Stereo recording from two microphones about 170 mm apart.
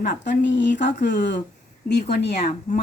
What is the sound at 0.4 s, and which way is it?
Speech, 90° left.